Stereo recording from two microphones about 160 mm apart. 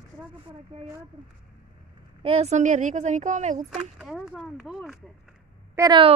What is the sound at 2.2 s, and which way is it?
A woman's voice, 40° right (ahead or behind).